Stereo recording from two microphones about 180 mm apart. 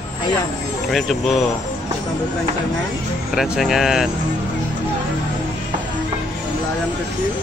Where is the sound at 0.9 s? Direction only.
Centre (ahead or behind).